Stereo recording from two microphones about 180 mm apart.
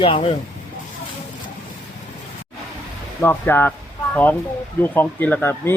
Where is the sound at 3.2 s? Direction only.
10° left (ahead or behind).